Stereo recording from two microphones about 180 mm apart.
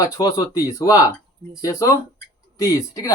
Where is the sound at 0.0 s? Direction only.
20° left (ahead or behind).